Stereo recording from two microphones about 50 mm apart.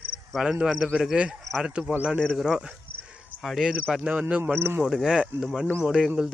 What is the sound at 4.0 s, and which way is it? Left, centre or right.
Speech, right.